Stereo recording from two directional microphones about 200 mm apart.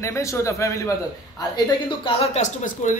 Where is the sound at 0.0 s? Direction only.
15° left (ahead or behind).